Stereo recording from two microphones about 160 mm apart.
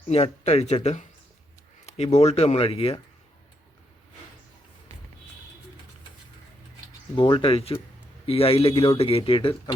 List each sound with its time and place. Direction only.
0.1 s speech: 40° left (ahead or behind)
7.2 s speech: 30° left (ahead or behind)